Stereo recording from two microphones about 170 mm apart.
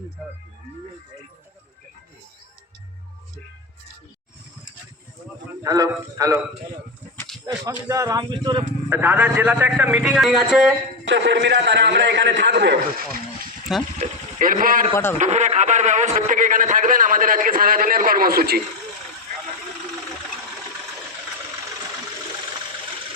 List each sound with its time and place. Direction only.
5.6 s speech: 20° right (ahead or behind)
7.6 s speech: 20° right (ahead or behind)
8.9 s a man's voice: 10° right (ahead or behind)
11.0 s a man's voice: 90° right; by 13.5 s 65° right (ahead or behind)
14.0 s a man's voice: 50° right (ahead or behind)
15.2 s a man's voice: 40° right (ahead or behind); by 18.6 s 60° right (ahead or behind)